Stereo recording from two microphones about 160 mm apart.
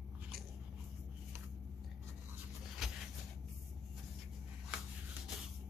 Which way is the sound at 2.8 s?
Centre (ahead or behind).